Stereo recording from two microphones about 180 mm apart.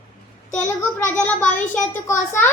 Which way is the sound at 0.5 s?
10° left (ahead or behind).